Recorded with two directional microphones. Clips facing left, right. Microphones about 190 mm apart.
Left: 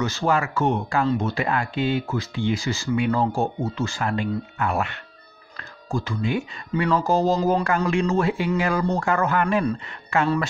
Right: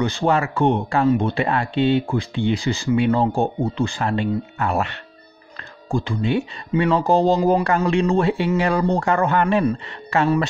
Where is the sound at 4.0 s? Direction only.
30° right (ahead or behind); by 7.6 s 15° right (ahead or behind).